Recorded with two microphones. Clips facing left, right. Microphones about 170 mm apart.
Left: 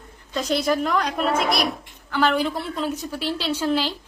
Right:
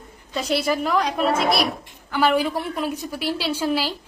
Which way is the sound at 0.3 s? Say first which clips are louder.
Left 1 dB; 10° right (ahead or behind).